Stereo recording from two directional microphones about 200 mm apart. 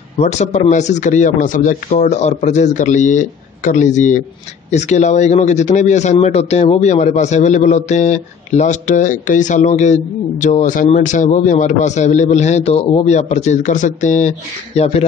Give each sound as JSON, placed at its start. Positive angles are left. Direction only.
{"t": 0.2, "sound": "a man's voice", "side_deg": 35}